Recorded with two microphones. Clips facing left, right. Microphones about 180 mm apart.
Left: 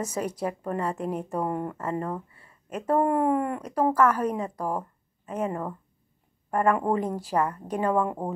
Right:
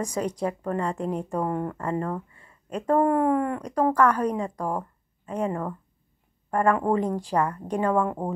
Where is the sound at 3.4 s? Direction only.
10° left (ahead or behind).